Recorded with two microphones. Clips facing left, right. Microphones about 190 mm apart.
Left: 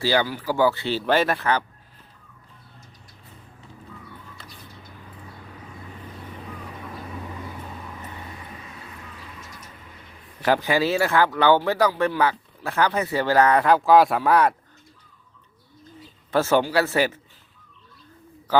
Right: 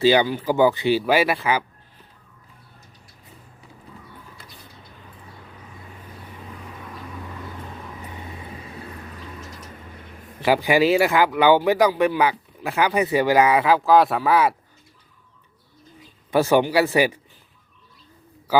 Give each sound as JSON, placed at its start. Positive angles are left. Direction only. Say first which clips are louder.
{"t": 0.0, "sound": "speech", "louder": "right 5 dB", "side_deg": -20}
{"t": 10.4, "sound": "speech", "louder": "right 3 dB", "side_deg": -10}
{"t": 16.3, "sound": "speech", "louder": "right 2 dB", "side_deg": -15}